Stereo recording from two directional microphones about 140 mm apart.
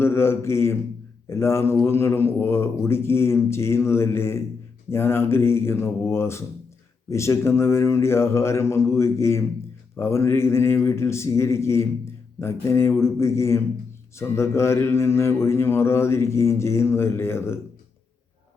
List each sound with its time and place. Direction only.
0.0 s a man's voice: 20° left (ahead or behind)
7.1 s mantra: 20° left (ahead or behind)